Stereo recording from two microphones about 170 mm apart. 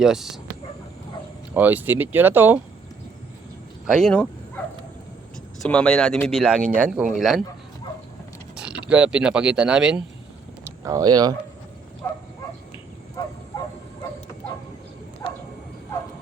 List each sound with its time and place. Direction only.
0.0 s speech: centre (ahead or behind)
1.5 s speech: 10° right (ahead or behind)
3.8 s speech: centre (ahead or behind)
4.1 s bow-wow: 10° left (ahead or behind)
5.6 s speech: 5° left (ahead or behind)
6.6 s speech: 55° right (ahead or behind)
6.8 s speech: 5° right (ahead or behind)
8.5 s speech: 5° right (ahead or behind)
10.8 s speech: 20° right (ahead or behind)
12.0 s a sound: 15° left (ahead or behind)
15.2 s a sound: 20° left (ahead or behind)